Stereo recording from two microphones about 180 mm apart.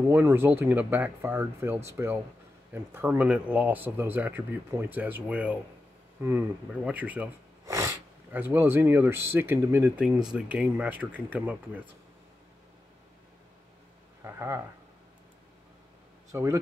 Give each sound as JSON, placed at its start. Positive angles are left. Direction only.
{"t": 0.1, "sound": "speech", "side_deg": -10}
{"t": 14.2, "sound": "speech", "side_deg": -15}
{"t": 16.3, "sound": "speech", "side_deg": -15}